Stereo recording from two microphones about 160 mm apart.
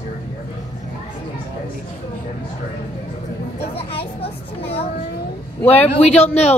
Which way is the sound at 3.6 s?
40° left (ahead or behind).